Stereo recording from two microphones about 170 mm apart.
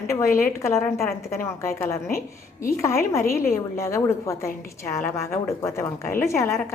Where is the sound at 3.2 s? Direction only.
60° left (ahead or behind).